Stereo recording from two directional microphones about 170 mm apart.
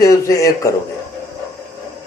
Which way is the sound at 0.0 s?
20° left (ahead or behind).